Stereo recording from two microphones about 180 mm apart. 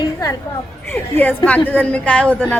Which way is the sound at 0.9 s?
10° left (ahead or behind).